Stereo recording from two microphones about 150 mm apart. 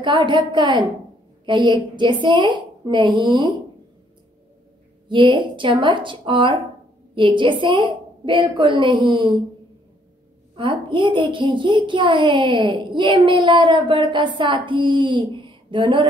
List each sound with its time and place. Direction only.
0.0 s a woman's voice: 30° right (ahead or behind)
5.0 s a woman's voice: 30° right (ahead or behind)
10.5 s a woman's voice: 35° right (ahead or behind)